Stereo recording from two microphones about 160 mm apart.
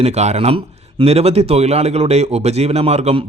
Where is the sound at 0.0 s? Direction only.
45° right (ahead or behind).